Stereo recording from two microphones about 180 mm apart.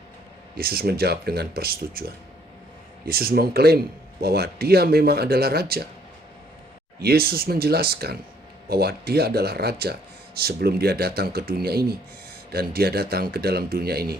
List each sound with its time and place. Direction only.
0.5 s speech: 60° right (ahead or behind)
7.0 s speech: 60° right (ahead or behind)